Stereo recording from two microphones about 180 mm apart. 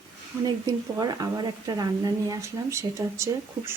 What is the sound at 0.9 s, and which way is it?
Speech, 20° right (ahead or behind).